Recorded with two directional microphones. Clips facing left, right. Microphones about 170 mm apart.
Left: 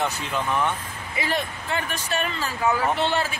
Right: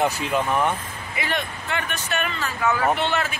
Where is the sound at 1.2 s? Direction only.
35° left (ahead or behind).